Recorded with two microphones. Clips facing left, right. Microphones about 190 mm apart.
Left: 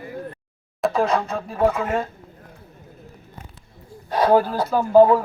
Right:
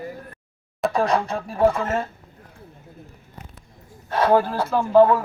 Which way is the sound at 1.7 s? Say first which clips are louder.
Left 1 dB; 5° left (ahead or behind).